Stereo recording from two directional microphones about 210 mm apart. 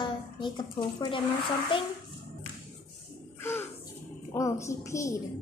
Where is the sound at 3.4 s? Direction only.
10° left (ahead or behind).